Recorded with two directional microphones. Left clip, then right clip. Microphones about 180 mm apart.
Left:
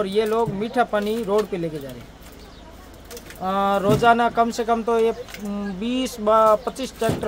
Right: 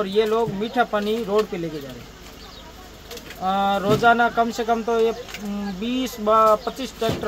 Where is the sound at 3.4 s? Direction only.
25° left (ahead or behind).